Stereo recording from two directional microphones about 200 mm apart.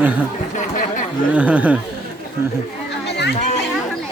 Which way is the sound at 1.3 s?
5° right (ahead or behind).